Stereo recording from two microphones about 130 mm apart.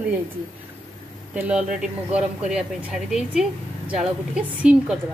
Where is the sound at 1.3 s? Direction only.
10° right (ahead or behind).